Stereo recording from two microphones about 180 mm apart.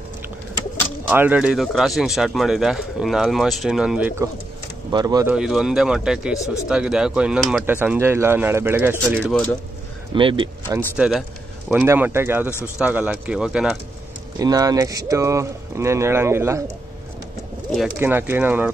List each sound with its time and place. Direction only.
1.0 s speech: 10° right (ahead or behind)
4.9 s speech: 20° right (ahead or behind)
5.3 s speech: 5° right (ahead or behind)
10.1 s speech: 30° right (ahead or behind)
11.0 s speech: centre (ahead or behind)
14.4 s speech: 20° right (ahead or behind)
17.6 s speech: 5° right (ahead or behind)